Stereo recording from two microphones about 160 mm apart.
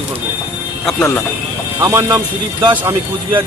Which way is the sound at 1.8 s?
20° right (ahead or behind).